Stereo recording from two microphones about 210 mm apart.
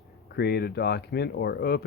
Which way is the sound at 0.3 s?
50° left (ahead or behind).